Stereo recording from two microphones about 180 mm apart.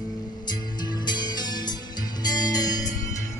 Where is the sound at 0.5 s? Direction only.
25° left (ahead or behind).